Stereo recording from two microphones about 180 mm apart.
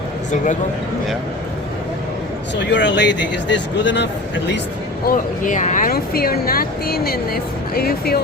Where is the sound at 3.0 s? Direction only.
75° left (ahead or behind).